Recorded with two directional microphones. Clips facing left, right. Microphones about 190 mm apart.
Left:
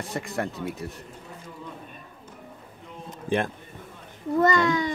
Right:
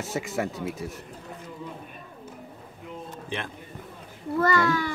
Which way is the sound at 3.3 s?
50° left (ahead or behind).